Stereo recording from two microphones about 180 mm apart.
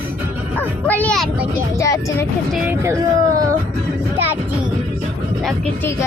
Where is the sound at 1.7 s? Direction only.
15° left (ahead or behind).